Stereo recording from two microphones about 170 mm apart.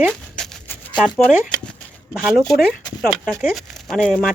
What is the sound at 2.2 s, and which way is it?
Speech, centre (ahead or behind).